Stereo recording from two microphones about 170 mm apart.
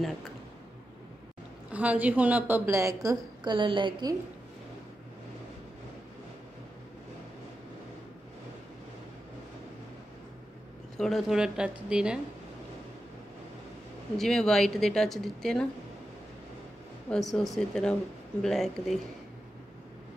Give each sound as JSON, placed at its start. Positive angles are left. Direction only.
{"t": 1.7, "sound": "a woman's voice", "side_deg": -10}
{"t": 11.0, "sound": "speech", "side_deg": 0}
{"t": 14.1, "sound": "speech", "side_deg": 5}
{"t": 17.1, "sound": "speech", "side_deg": 0}